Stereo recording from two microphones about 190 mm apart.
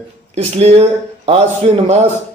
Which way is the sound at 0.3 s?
35° right (ahead or behind).